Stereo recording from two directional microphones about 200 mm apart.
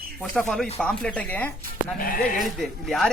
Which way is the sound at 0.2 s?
5° left (ahead or behind).